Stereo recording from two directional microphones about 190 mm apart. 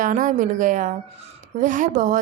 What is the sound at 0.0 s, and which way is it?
A woman's voice, 45° right (ahead or behind).